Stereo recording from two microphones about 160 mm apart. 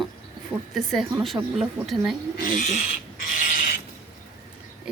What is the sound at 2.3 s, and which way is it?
Speech, 55° left (ahead or behind).